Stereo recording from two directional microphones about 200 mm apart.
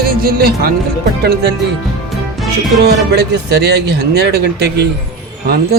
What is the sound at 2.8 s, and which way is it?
Speech, 55° right (ahead or behind).